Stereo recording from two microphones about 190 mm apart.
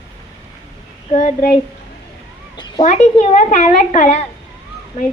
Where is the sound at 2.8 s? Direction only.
40° left (ahead or behind).